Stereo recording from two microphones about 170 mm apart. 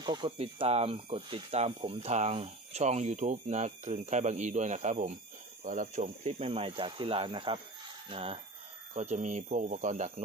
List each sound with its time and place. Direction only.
0.0 s speech: 25° right (ahead or behind)
8.9 s speech: 45° right (ahead or behind)